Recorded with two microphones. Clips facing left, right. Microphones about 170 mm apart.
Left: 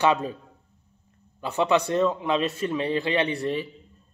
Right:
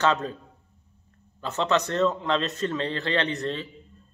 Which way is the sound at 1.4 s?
10° left (ahead or behind).